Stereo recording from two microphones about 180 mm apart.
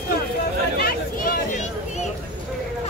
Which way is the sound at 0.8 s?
55° left (ahead or behind).